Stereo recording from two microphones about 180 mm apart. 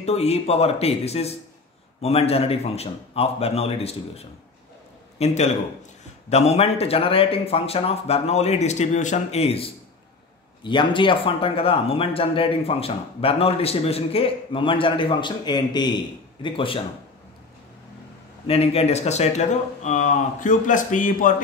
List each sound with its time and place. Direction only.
0.0 s speech: 35° left (ahead or behind)
18.5 s speech: 35° left (ahead or behind)